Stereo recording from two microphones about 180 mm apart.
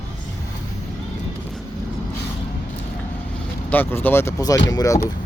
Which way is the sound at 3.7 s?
10° left (ahead or behind).